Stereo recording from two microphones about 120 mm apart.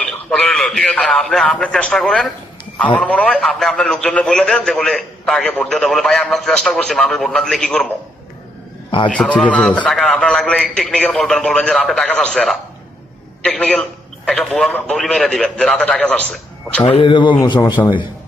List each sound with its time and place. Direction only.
0.0 s a man's voice: 5° left (ahead or behind)
9.1 s a man's voice: 5° left (ahead or behind)
16.8 s speech: 45° left (ahead or behind)